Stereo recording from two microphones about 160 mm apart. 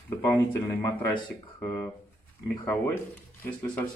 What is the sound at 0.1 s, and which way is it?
Speech, 20° left (ahead or behind).